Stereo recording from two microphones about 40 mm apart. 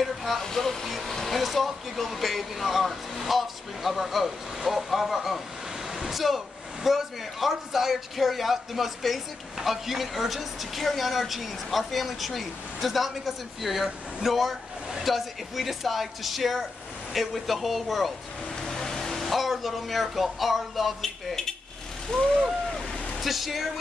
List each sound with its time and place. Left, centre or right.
0.0 s speech: centre
18.6 s speech: centre
23.2 s speech: centre